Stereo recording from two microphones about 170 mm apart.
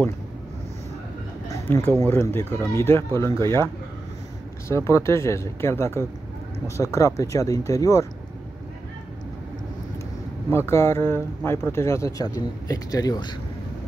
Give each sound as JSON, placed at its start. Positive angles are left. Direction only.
{"t": 1.5, "sound": "a sound", "side_deg": 15}
{"t": 2.0, "sound": "speech", "side_deg": 15}
{"t": 10.5, "sound": "speech", "side_deg": 15}